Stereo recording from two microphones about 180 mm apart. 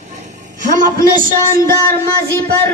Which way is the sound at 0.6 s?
50° right (ahead or behind).